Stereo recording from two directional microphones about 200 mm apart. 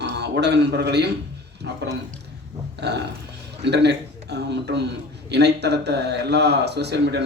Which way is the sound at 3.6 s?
60° right (ahead or behind).